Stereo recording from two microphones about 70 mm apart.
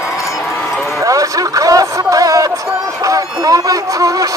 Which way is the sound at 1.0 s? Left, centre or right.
Right.